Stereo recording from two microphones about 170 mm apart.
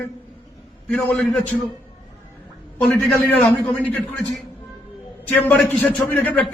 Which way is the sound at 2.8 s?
5° left (ahead or behind).